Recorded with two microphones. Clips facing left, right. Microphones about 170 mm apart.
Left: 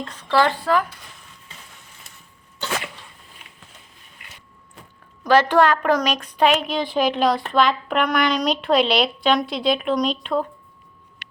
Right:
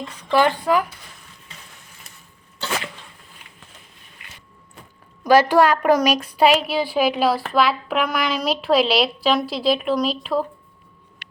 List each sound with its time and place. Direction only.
0.0 s speech: 15° right (ahead or behind)
5.2 s a woman's voice: 10° right (ahead or behind)